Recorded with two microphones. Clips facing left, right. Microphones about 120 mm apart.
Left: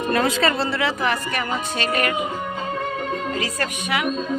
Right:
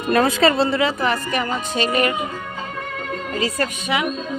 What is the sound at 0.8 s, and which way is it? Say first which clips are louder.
Speech: right 2 dB; 10° right (ahead or behind).